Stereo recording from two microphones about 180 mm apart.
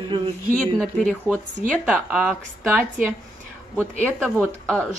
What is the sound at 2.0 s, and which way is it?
A woman's voice, centre (ahead or behind).